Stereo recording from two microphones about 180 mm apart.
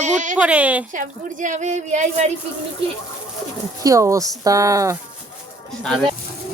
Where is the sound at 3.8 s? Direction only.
15° right (ahead or behind).